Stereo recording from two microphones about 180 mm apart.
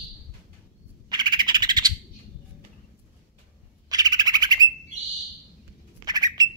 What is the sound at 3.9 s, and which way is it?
Owl, 20° right (ahead or behind).